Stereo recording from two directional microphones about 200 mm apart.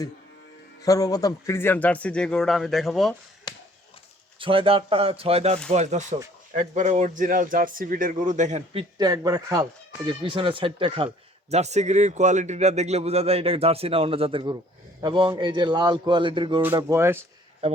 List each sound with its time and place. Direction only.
0.8 s a man's voice: 15° left (ahead or behind)
4.4 s a man's voice: 25° right (ahead or behind)
16.6 s speech: 15° right (ahead or behind)